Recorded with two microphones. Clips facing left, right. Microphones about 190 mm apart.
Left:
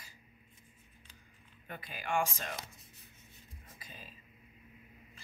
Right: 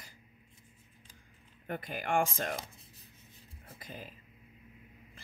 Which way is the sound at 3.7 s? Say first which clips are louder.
Right 8 dB; 55° right (ahead or behind).